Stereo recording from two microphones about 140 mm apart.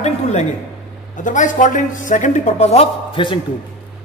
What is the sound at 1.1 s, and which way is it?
A man's voice, 65° left (ahead or behind).